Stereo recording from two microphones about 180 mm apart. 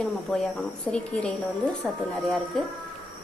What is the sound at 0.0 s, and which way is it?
A woman's voice, centre (ahead or behind).